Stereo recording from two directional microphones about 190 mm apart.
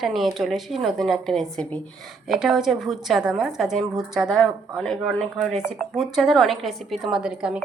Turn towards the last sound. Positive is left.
turn(degrees=-5)  # may be behind; listen again after turning